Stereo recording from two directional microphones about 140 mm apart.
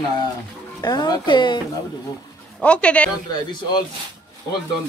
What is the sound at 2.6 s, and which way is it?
Speech, 10° left (ahead or behind).